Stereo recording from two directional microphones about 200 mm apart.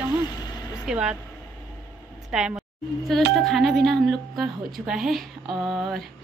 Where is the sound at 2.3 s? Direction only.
5° right (ahead or behind).